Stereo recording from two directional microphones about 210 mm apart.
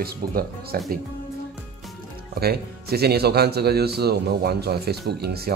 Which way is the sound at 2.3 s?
50° right (ahead or behind).